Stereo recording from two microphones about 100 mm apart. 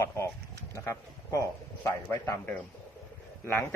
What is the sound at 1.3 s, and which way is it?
A man's voice, 25° left (ahead or behind).